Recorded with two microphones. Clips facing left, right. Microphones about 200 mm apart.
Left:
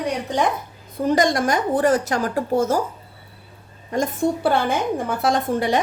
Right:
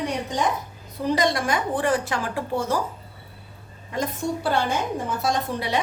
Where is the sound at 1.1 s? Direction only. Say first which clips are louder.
Left 4 dB; 45° left (ahead or behind).